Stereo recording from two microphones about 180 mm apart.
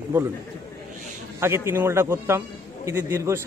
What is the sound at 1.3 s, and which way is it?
A man's voice, 15° right (ahead or behind).